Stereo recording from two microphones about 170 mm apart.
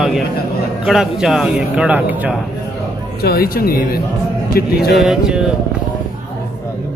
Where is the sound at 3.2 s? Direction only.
65° left (ahead or behind).